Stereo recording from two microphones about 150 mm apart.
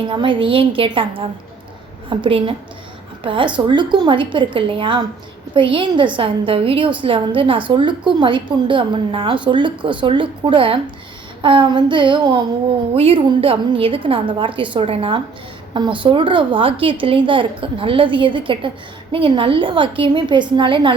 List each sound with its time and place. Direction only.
0.0 s a woman's voice: 35° right (ahead or behind)